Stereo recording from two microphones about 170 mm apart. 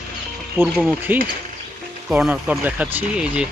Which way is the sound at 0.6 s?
10° right (ahead or behind).